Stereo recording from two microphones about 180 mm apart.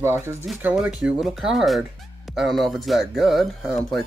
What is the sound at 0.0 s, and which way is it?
Speech, 15° right (ahead or behind).